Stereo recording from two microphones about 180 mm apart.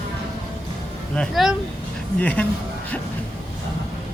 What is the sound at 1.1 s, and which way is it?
Speech, centre (ahead or behind).